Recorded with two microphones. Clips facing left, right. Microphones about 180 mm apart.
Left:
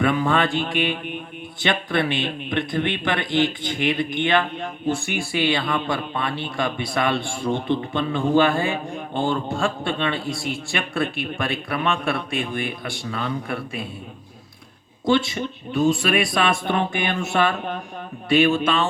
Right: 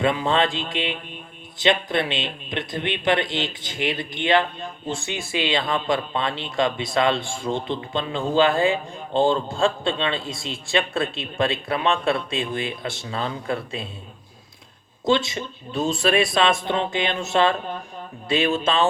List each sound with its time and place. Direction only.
0.0 s a man's voice: 20° right (ahead or behind)
15.0 s a man's voice: 20° right (ahead or behind)